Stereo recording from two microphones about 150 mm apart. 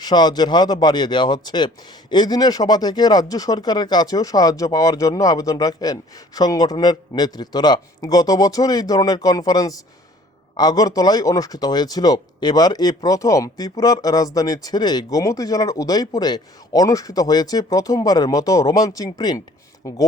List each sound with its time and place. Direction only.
0.0 s speech: 30° left (ahead or behind)